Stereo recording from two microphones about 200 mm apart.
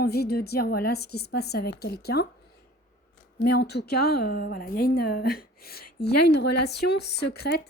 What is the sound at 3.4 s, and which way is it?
A woman's voice, 55° left (ahead or behind).